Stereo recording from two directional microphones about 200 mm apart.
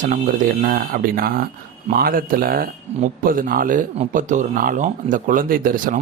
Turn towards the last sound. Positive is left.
turn(degrees=-45)  # may be behind; listen again after turning